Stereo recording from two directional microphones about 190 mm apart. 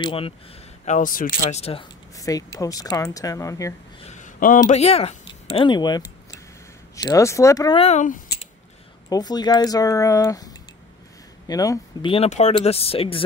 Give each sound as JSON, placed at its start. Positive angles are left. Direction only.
{"t": 0.0, "sound": "speech", "side_deg": 30}
{"t": 0.8, "sound": "speech", "side_deg": 45}
{"t": 2.1, "sound": "speech", "side_deg": 20}
{"t": 4.0, "sound": "speech", "side_deg": 40}
{"t": 7.8, "sound": "speech", "side_deg": 40}
{"t": 9.1, "sound": "speech", "side_deg": 20}
{"t": 12.1, "sound": "speech", "side_deg": 35}